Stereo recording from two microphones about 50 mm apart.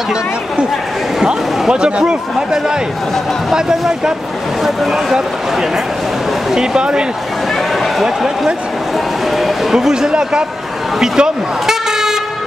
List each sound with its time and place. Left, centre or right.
1.2 s speech: centre
8.0 s speech: centre